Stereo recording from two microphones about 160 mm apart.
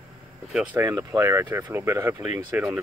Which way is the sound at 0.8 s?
20° right (ahead or behind).